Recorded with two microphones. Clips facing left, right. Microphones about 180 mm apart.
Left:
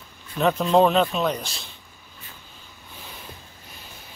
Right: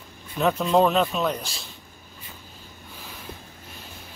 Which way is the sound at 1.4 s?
35° right (ahead or behind).